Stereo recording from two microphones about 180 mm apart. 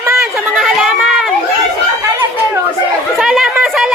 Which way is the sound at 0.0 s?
15° right (ahead or behind).